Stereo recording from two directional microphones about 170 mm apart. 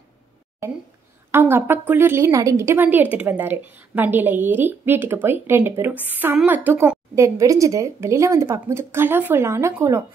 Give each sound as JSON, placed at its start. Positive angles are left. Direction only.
{"t": 0.6, "sound": "a woman's voice", "side_deg": -15}